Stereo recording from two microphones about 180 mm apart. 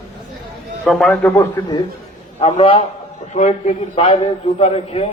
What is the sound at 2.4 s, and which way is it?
A man's voice, 35° left (ahead or behind).